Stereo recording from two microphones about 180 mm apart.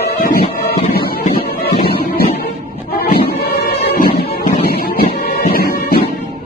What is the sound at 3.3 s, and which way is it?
Music, 60° left (ahead or behind).